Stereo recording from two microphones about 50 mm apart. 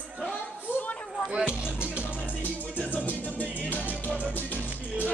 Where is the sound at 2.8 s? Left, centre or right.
Left.